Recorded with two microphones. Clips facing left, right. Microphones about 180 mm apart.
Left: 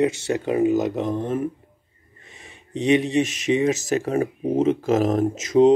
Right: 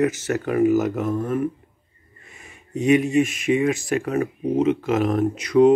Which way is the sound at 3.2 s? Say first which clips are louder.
Right 1 dB; 40° left (ahead or behind).